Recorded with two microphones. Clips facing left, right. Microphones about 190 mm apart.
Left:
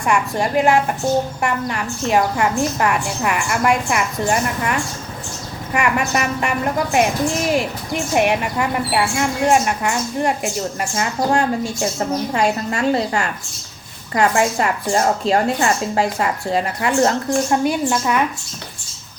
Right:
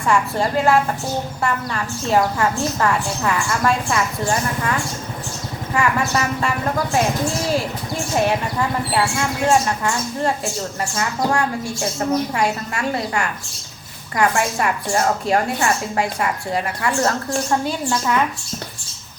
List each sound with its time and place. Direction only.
0.0 s a woman's voice: 15° left (ahead or behind)